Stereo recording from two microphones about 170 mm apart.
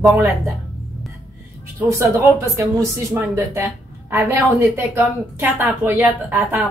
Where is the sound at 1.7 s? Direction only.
15° right (ahead or behind).